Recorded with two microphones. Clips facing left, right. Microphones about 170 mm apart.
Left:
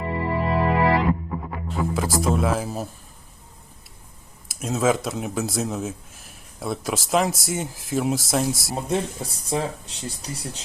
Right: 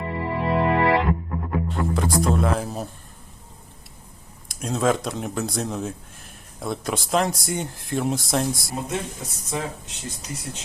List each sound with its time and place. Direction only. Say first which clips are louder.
0.0 s music: left 1 dB; centre (ahead or behind)
1.4 s speech: right 2 dB; centre (ahead or behind)
4.4 s speech: left 1 dB; 5° left (ahead or behind)
8.9 s speech: left 4 dB; 30° left (ahead or behind)